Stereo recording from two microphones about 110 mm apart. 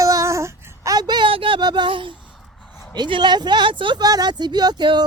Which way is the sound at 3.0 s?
45° right (ahead or behind).